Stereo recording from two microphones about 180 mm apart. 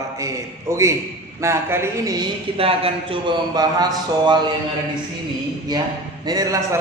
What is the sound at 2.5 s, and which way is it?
A man's voice, 30° right (ahead or behind).